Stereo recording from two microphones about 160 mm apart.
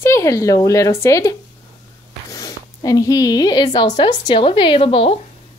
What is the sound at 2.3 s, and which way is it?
Speech, 25° left (ahead or behind).